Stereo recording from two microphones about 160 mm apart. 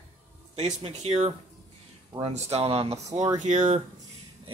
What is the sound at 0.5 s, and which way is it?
Speech, 40° right (ahead or behind).